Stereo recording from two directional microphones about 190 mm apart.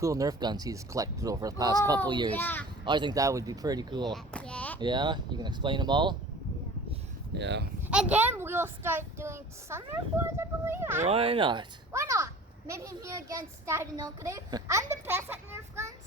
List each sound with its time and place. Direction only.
0.0 s a child's voice: 20° right (ahead or behind)
2.3 s a child's voice: 10° left (ahead or behind)
2.8 s speech: 25° right (ahead or behind)
4.1 s a sound: 5° left (ahead or behind)
4.8 s speech: 25° right (ahead or behind)
7.3 s speech: 65° right (ahead or behind)
7.9 s a child's voice: 5° right (ahead or behind)
11.0 s speech: 30° right (ahead or behind)
11.9 s a child's voice: 15° right (ahead or behind)